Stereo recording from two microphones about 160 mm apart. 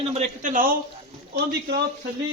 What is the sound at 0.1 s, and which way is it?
Speech, 50° right (ahead or behind).